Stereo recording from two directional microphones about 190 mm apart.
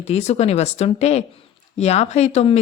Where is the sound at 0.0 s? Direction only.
35° left (ahead or behind).